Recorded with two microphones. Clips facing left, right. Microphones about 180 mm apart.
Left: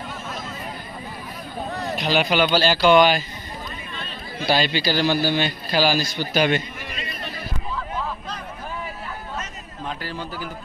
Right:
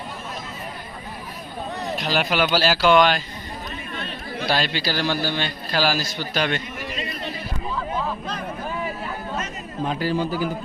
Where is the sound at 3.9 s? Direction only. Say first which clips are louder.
Right 3 dB; 60° right (ahead or behind).